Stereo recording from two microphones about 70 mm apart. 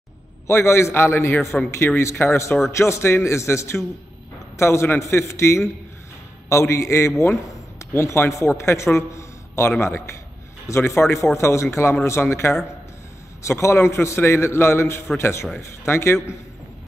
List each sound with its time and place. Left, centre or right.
0.5 s a man's voice: left